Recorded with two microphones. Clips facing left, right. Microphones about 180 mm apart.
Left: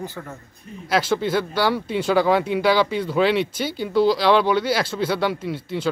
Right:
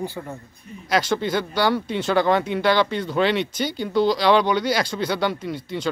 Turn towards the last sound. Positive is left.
turn(degrees=5)  # may be behind; listen again after turning